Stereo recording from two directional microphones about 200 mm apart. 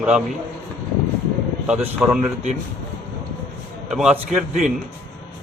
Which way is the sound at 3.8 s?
5° right (ahead or behind).